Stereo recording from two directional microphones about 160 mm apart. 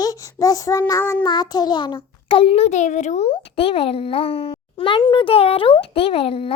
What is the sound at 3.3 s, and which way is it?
A child's voice, 35° left (ahead or behind).